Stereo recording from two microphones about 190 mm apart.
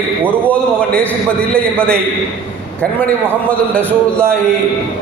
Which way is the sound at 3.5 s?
5° left (ahead or behind).